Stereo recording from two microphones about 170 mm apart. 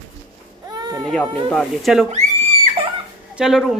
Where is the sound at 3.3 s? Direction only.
5° right (ahead or behind).